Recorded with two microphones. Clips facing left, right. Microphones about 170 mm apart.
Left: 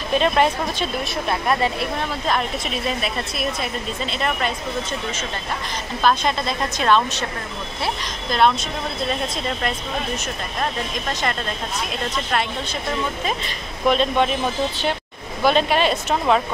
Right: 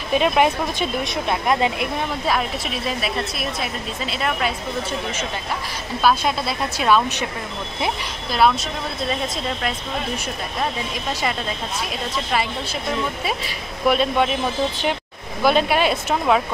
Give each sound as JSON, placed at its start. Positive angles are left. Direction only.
{"t": 0.1, "sound": "speech", "side_deg": -10}
{"t": 2.2, "sound": "a woman's voice", "side_deg": -5}
{"t": 6.0, "sound": "speech", "side_deg": -5}
{"t": 8.3, "sound": "a woman's voice", "side_deg": -5}
{"t": 13.2, "sound": "speech", "side_deg": -5}
{"t": 15.4, "sound": "speech", "side_deg": -10}